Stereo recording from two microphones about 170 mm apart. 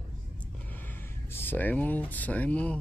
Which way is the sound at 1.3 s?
10° left (ahead or behind).